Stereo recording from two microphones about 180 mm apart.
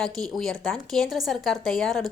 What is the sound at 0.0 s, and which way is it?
A woman's voice, centre (ahead or behind).